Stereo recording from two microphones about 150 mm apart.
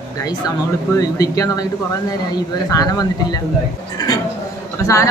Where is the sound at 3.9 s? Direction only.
25° left (ahead or behind).